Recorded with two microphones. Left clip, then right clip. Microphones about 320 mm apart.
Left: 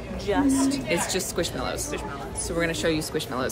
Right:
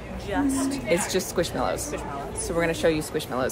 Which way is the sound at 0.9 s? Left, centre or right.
Centre.